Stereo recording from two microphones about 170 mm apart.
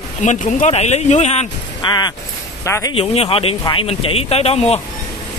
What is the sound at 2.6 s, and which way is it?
Speech, 15° left (ahead or behind).